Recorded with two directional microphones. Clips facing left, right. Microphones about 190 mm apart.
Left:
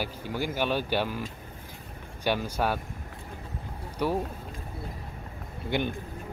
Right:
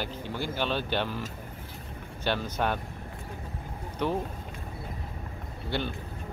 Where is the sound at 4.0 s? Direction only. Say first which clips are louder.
Left 1 dB; 10° left (ahead or behind).